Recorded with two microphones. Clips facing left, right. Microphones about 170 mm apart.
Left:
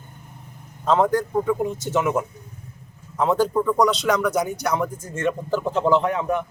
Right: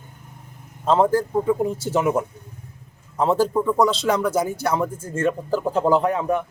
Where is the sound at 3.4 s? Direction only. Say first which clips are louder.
Even; 10° right (ahead or behind).